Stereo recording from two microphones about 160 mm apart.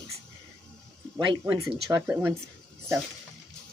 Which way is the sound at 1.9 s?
10° right (ahead or behind).